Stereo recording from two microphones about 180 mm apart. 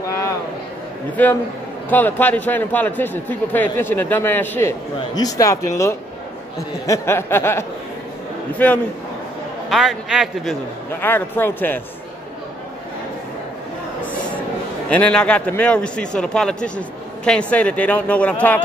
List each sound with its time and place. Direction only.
1.1 s a man's voice: 10° left (ahead or behind)
9.7 s a man's voice: centre (ahead or behind)
11.0 s a man's voice: 10° left (ahead or behind)
14.9 s a man's voice: 5° left (ahead or behind)